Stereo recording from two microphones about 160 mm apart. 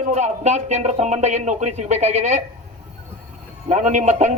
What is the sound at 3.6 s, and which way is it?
Speech, 45° right (ahead or behind).